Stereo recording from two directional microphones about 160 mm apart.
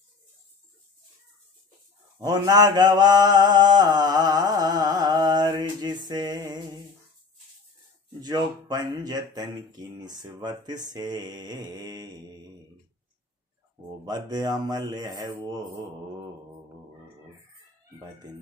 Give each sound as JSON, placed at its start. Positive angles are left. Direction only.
{"t": 2.1, "sound": "mantra", "side_deg": -20}
{"t": 8.2, "sound": "mantra", "side_deg": -25}
{"t": 14.0, "sound": "mantra", "side_deg": -25}